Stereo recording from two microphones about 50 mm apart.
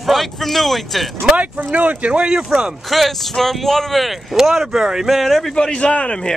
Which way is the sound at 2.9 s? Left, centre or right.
Centre.